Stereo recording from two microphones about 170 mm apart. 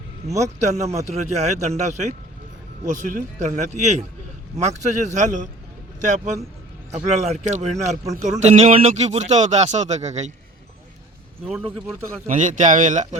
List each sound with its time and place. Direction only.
0.6 s a man's voice: 40° right (ahead or behind)
7.9 s a man's voice: 20° right (ahead or behind)
8.2 s a man's voice: 45° right (ahead or behind)
12.3 s a man's voice: 45° right (ahead or behind)